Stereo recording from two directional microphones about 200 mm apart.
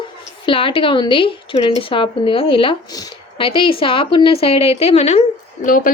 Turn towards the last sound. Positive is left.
turn(degrees=40)  # may be behind; listen again after turning